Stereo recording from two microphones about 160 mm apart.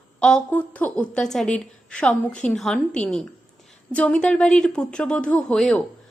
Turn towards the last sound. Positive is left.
turn(degrees=5)  # may be behind; listen again after turning